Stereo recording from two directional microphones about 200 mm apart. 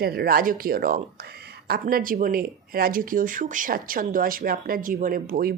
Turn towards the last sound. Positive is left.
turn(degrees=-45)  # may be behind; listen again after turning